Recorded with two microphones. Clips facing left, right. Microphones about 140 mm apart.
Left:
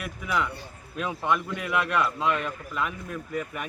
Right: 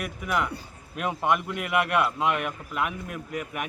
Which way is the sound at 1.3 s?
10° right (ahead or behind).